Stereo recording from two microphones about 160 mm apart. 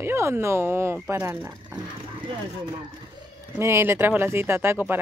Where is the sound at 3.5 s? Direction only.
15° right (ahead or behind).